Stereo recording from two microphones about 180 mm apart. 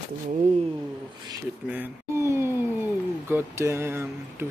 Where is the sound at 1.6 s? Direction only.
10° right (ahead or behind).